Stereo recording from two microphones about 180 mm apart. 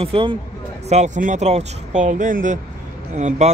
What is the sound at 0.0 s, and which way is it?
Speech, 30° right (ahead or behind).